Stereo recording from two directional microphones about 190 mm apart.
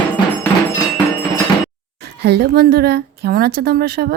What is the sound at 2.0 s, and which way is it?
A woman's voice, 60° right (ahead or behind).